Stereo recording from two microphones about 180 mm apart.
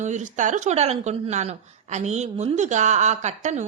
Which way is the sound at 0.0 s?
40° right (ahead or behind).